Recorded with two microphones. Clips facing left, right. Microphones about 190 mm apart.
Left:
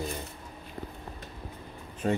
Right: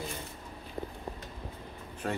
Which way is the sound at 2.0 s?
20° left (ahead or behind).